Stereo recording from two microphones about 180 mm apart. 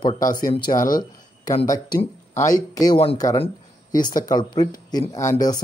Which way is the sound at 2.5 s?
20° left (ahead or behind).